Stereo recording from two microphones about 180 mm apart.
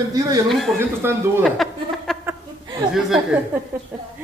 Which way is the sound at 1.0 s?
10° right (ahead or behind).